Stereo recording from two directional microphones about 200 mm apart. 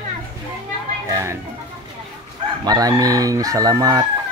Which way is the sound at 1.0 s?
15° right (ahead or behind).